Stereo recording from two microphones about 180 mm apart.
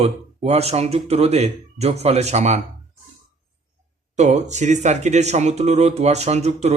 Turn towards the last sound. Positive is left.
turn(degrees=-35)  # may be behind; listen again after turning